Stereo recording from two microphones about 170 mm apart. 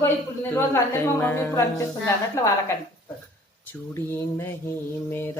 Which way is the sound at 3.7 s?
15° left (ahead or behind).